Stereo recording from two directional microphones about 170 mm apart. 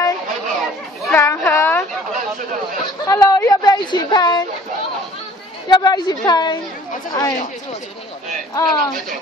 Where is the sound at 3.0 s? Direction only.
20° left (ahead or behind).